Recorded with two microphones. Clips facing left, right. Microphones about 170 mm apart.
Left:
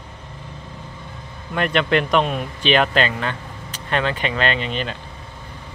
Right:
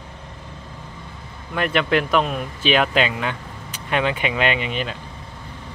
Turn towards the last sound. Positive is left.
turn(degrees=-10)  # may be behind; listen again after turning